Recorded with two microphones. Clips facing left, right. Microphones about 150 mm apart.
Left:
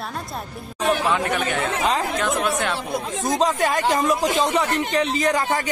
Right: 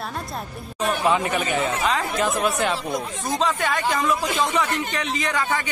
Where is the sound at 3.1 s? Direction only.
40° left (ahead or behind).